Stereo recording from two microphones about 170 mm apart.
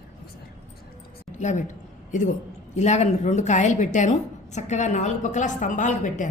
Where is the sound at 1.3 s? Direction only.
45° left (ahead or behind).